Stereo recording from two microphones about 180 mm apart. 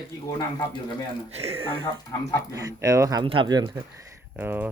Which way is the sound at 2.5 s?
20° right (ahead or behind).